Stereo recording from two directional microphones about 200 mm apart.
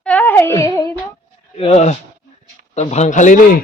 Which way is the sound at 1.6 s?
35° left (ahead or behind).